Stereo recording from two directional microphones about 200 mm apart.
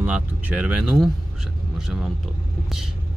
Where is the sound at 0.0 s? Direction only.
5° right (ahead or behind).